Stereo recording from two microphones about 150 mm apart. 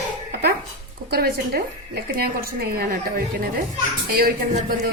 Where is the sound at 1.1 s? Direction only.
90° right.